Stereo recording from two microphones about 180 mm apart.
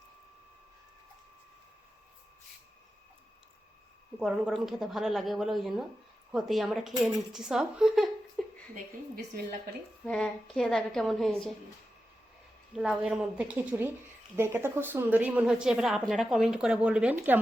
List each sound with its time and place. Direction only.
4.2 s a woman's voice: centre (ahead or behind)
8.7 s a woman's voice: 50° right (ahead or behind)
10.1 s a woman's voice: 5° left (ahead or behind)
12.7 s a woman's voice: 5° right (ahead or behind)